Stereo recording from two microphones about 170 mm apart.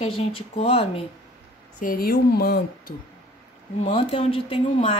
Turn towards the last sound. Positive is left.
turn(degrees=30)  # may be behind; listen again after turning